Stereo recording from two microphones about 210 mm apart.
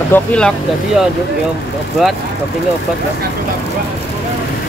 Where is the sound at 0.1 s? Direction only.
5° left (ahead or behind).